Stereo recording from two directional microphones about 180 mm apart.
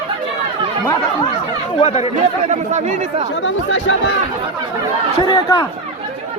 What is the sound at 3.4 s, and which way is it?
Speech, 90° left.